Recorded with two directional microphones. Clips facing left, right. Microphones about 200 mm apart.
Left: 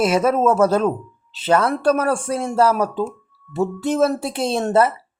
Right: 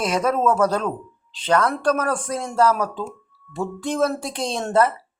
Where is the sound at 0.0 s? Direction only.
5° left (ahead or behind).